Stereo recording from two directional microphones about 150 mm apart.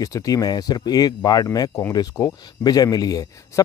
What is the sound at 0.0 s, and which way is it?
Speech, 25° left (ahead or behind).